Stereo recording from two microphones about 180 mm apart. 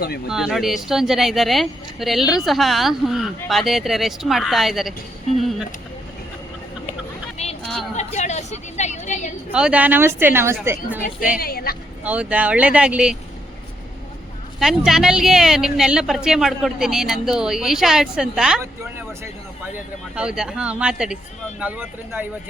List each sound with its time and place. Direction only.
0.3 s speech: 5° right (ahead or behind)
5.4 s a sound: centre (ahead or behind)
7.4 s a sound: 35° left (ahead or behind)
7.9 s vehicle: 40° left (ahead or behind)
9.5 s a woman's voice: 5° right (ahead or behind)
11.3 s speech: 55° left (ahead or behind)
12.0 s a woman's voice: 5° right (ahead or behind)
14.6 s speech: centre (ahead or behind)
18.6 s a woman's voice: 15° right (ahead or behind)
20.1 s a woman's voice: 5° right (ahead or behind)